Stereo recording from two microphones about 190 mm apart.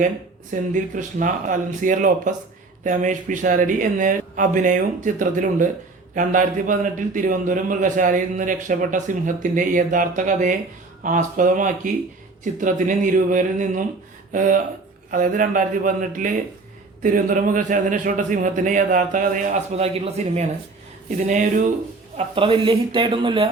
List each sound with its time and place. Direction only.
0.5 s a man's voice: 40° right (ahead or behind)
22.4 s speech: 25° right (ahead or behind)